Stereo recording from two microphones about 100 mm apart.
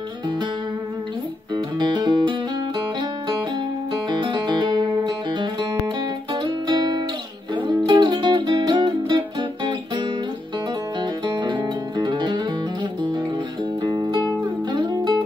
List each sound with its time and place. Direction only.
1.5 s music: 50° right (ahead or behind)
4.1 s music: 50° right (ahead or behind)
6.4 s music: 45° right (ahead or behind)
13.8 s music: 45° right (ahead or behind)